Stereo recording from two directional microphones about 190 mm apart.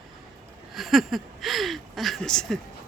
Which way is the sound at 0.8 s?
Centre (ahead or behind).